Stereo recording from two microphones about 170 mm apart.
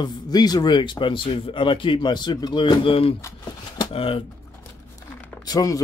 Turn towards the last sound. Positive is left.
turn(degrees=20)  # may be behind; listen again after turning